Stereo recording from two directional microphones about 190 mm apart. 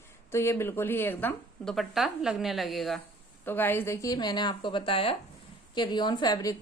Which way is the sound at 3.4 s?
10° left (ahead or behind).